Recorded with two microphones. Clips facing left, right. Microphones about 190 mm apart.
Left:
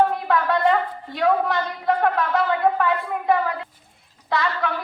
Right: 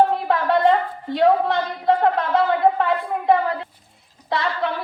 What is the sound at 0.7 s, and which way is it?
A woman's voice, 25° right (ahead or behind).